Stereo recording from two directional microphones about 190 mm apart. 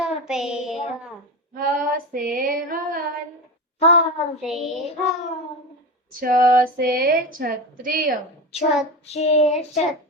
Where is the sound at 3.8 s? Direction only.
35° left (ahead or behind).